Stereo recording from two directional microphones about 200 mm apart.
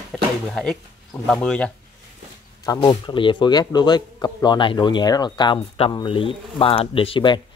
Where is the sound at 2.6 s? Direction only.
20° left (ahead or behind).